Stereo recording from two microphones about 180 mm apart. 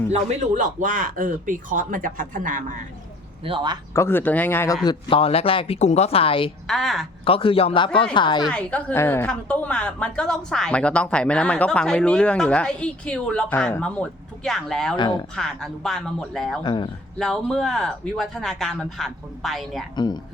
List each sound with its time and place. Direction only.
0.1 s speech: 40° right (ahead or behind)
3.4 s speech: 25° right (ahead or behind)
3.9 s speech: 15° left (ahead or behind); by 6.5 s 30° left (ahead or behind)
6.7 s a woman's voice: centre (ahead or behind)
7.3 s speech: 30° left (ahead or behind)
8.4 s a woman's voice: 5° left (ahead or behind)
14.9 s speech: 25° left (ahead or behind)
15.4 s a woman's voice: centre (ahead or behind)
16.6 s speech: 25° left (ahead or behind)
17.2 s a woman's voice: 5° left (ahead or behind)